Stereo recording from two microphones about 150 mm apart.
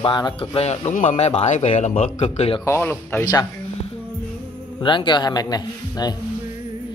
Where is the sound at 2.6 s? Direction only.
15° left (ahead or behind).